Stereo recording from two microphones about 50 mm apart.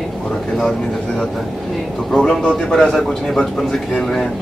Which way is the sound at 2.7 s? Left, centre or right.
Centre.